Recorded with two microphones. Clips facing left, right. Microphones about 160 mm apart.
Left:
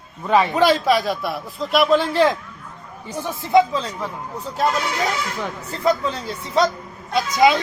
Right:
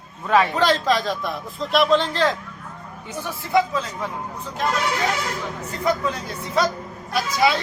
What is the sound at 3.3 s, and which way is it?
Speech, 20° left (ahead or behind).